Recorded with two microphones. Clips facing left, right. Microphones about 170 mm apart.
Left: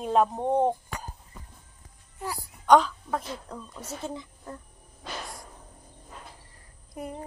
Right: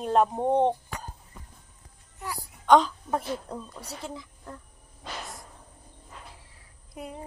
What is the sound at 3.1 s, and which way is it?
Speech, 20° right (ahead or behind).